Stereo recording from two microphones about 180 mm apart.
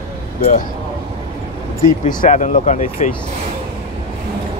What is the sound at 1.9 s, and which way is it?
Speech, 45° left (ahead or behind).